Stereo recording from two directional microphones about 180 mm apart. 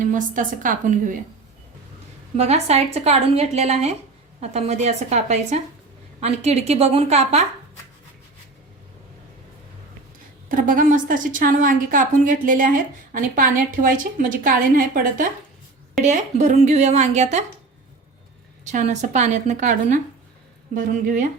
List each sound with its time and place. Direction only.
0.0 s a woman's voice: 45° right (ahead or behind)
2.3 s a woman's voice: 35° right (ahead or behind)
10.5 s a woman's voice: 50° right (ahead or behind)
18.6 s a woman's voice: 45° right (ahead or behind)